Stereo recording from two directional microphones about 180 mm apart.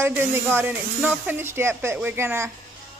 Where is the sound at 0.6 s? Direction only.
10° right (ahead or behind).